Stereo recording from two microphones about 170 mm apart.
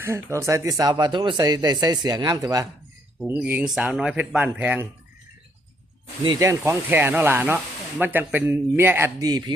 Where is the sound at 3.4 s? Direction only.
10° right (ahead or behind).